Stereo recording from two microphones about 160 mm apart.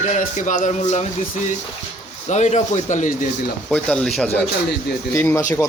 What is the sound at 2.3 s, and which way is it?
Speech, 45° left (ahead or behind).